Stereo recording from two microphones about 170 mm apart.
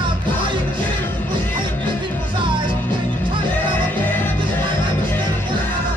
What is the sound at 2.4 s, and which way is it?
Music, 30° right (ahead or behind).